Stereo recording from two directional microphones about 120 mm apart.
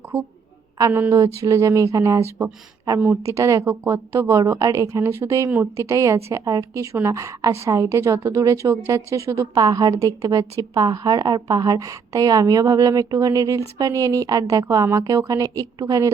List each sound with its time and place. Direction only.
0.8 s a woman's voice: 20° right (ahead or behind)